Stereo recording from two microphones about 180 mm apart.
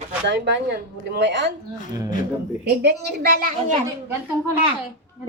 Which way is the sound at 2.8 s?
65° right (ahead or behind).